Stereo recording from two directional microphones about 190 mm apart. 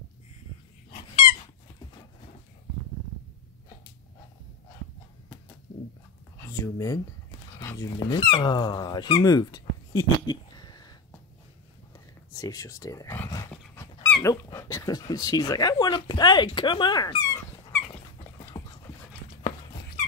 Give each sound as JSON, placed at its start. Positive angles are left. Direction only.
{"t": 6.3, "sound": "speech", "side_deg": 15}
{"t": 12.4, "sound": "speech", "side_deg": 20}
{"t": 13.5, "sound": "dog", "side_deg": 10}
{"t": 14.3, "sound": "speech", "side_deg": 15}
{"t": 16.5, "sound": "dog", "side_deg": 25}
{"t": 18.2, "sound": "a sound", "side_deg": 15}